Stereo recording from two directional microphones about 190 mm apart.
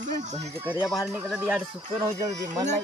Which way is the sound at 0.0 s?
40° right (ahead or behind).